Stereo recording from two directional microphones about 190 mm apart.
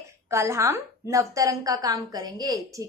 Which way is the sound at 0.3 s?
15° right (ahead or behind).